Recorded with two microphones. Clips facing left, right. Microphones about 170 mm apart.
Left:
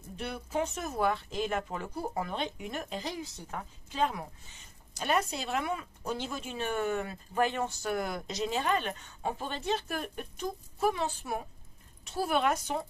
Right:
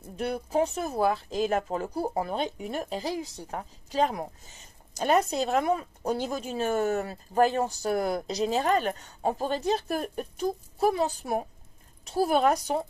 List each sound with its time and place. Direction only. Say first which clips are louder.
0.1 s speech: right 7 dB; 40° right (ahead or behind)